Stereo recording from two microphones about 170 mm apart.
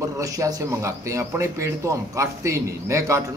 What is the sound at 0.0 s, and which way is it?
Speech, 20° right (ahead or behind).